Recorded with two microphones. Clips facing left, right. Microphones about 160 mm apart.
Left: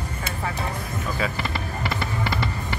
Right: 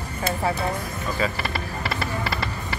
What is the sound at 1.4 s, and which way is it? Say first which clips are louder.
Music: even; 20° left (ahead or behind).